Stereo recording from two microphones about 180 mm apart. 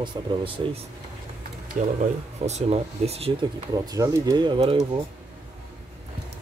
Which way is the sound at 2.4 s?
35° right (ahead or behind).